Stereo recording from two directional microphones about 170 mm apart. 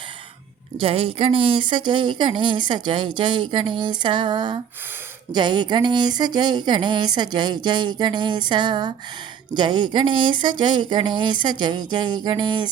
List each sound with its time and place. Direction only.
0.8 s speech: 35° right (ahead or behind)